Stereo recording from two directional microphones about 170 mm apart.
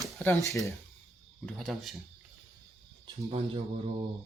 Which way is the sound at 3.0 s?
30° right (ahead or behind).